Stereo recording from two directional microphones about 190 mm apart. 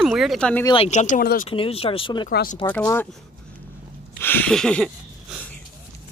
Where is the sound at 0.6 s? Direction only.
30° left (ahead or behind); by 1.4 s 50° left (ahead or behind).